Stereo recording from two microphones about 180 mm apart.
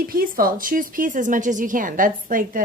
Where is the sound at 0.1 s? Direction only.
55° right (ahead or behind).